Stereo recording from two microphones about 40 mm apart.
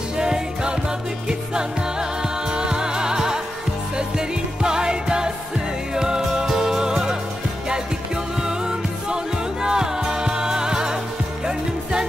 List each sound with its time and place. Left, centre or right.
0.2 s music: centre
8.4 s music: centre